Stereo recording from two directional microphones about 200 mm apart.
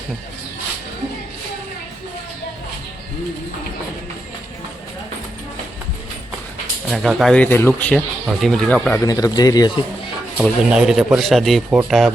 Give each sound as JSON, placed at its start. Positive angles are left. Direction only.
{"t": 6.8, "sound": "speech", "side_deg": 0}
{"t": 9.0, "sound": "speech", "side_deg": 20}
{"t": 10.3, "sound": "speech", "side_deg": -5}